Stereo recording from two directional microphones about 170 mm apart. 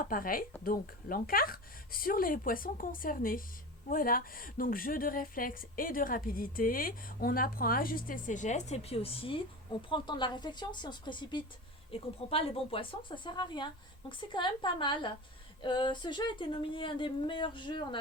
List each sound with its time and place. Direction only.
0.0 s a woman's voice: 55° left (ahead or behind); by 18.0 s 30° left (ahead or behind)